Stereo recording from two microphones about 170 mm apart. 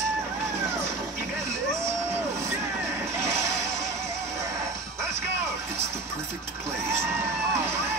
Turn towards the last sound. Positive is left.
turn(degrees=-15)  # may be behind; listen again after turning